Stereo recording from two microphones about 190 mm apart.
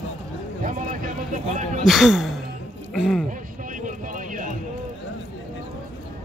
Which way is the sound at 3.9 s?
45° right (ahead or behind).